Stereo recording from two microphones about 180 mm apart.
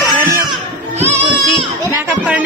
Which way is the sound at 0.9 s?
35° right (ahead or behind).